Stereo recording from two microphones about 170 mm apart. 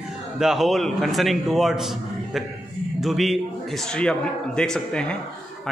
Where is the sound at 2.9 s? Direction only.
Centre (ahead or behind).